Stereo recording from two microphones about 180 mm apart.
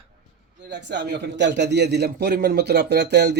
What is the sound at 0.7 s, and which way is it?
A man's voice, 75° right (ahead or behind).